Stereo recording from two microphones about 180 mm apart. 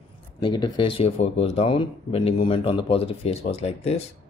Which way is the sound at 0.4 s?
25° left (ahead or behind).